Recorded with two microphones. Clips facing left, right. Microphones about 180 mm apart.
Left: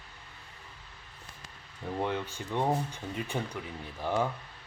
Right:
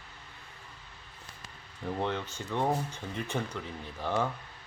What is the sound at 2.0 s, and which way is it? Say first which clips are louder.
Speech: left 2 dB; 10° left (ahead or behind).